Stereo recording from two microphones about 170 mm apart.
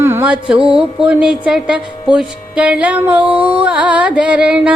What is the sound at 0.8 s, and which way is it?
Carnatic music, 5° right (ahead or behind).